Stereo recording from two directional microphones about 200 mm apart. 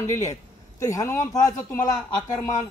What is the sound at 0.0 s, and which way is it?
Speech, 15° left (ahead or behind).